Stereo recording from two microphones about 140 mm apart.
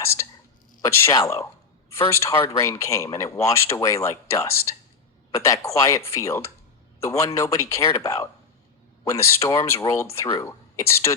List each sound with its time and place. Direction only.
0.0 s whispering: 15° left (ahead or behind)
1.0 s a man's voice: 20° left (ahead or behind)